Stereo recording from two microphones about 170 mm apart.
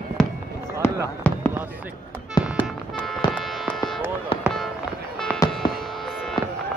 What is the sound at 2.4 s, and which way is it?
Music, 5° right (ahead or behind).